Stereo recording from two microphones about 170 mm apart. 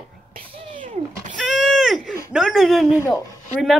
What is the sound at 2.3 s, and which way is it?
Speech, centre (ahead or behind).